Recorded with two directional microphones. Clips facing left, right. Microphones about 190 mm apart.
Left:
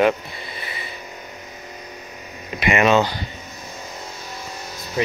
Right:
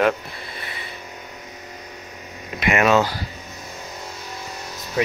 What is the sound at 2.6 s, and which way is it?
Speech, centre (ahead or behind).